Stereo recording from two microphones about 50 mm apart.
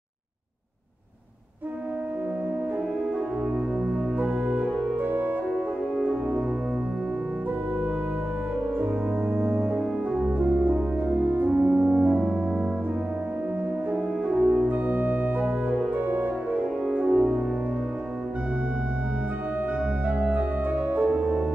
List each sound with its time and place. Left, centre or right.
5.0 s music: right
8.7 s music: right
9.8 s music: centre
10.4 s french horn: right
13.9 s french horn: centre
14.7 s organ: right
16.8 s music: centre
20.1 s music: right